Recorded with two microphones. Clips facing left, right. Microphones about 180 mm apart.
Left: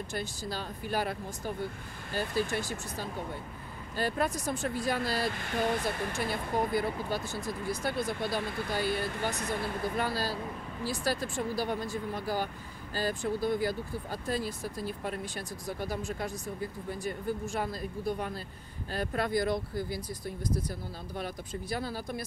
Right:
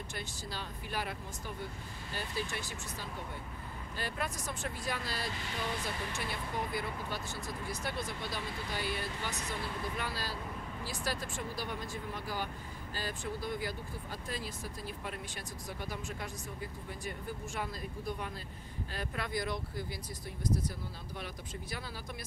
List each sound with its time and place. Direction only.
0.1 s speech: 40° left (ahead or behind)
5.2 s speech: 55° left (ahead or behind); by 11.8 s 35° left (ahead or behind)
12.9 s speech: 35° left (ahead or behind)
18.9 s speech: 40° left (ahead or behind)
21.2 s speech: 40° left (ahead or behind)